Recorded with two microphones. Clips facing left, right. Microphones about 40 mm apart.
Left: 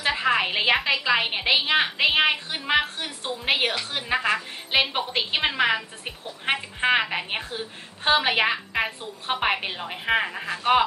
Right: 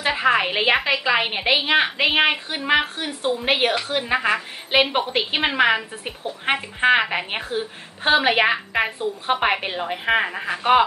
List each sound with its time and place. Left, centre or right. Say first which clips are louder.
0.0 s a woman's voice: right 3 dB; centre